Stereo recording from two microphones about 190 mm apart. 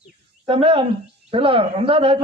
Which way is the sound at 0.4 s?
30° right (ahead or behind).